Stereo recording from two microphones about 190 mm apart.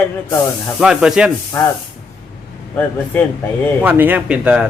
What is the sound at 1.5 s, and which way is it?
Speech, 10° left (ahead or behind).